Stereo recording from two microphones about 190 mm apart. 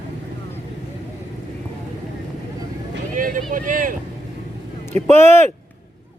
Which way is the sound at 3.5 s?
45° right (ahead or behind).